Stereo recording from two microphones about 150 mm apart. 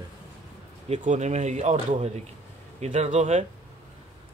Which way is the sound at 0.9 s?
55° right (ahead or behind).